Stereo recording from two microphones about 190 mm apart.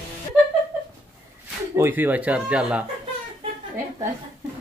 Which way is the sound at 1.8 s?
10° right (ahead or behind).